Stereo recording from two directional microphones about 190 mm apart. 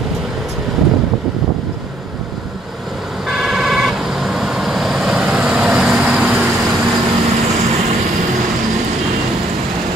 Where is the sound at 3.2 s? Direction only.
Centre (ahead or behind).